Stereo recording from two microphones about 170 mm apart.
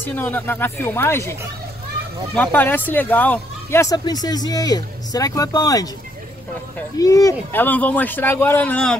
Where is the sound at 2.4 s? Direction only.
10° left (ahead or behind).